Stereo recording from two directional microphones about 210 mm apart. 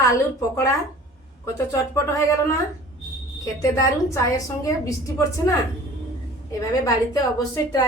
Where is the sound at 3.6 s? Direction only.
15° left (ahead or behind).